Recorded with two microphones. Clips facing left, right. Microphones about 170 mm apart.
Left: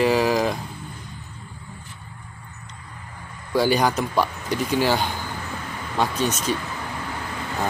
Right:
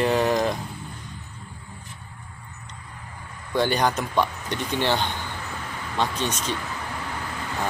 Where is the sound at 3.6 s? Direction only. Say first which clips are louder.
Left 3 dB; 5° left (ahead or behind).